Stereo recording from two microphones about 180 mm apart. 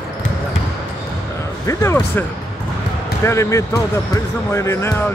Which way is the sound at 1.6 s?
15° left (ahead or behind).